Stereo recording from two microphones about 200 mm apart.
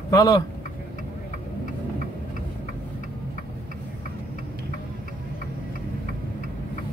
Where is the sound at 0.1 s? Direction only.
20° left (ahead or behind).